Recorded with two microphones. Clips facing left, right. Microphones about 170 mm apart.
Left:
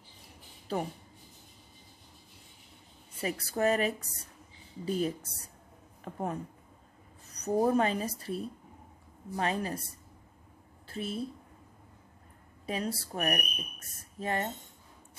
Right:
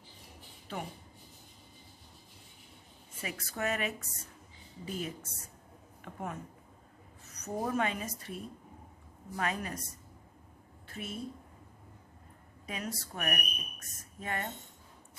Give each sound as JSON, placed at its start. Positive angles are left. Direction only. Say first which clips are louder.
{"t": 0.7, "sound": "speech", "louder": "left 7 dB", "side_deg": 35}
{"t": 3.2, "sound": "speech", "louder": "left 7 dB", "side_deg": 35}
{"t": 10.9, "sound": "a woman's voice", "louder": "left 6 dB", "side_deg": 30}
{"t": 12.6, "sound": "speech", "louder": "left 6 dB", "side_deg": 30}